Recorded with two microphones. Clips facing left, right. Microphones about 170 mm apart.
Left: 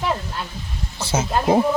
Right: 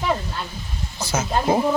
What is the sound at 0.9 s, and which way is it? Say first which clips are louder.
Speech: left 2 dB; 30° left (ahead or behind).